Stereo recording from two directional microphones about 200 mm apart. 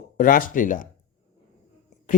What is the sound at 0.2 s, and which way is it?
Speech, 45° left (ahead or behind).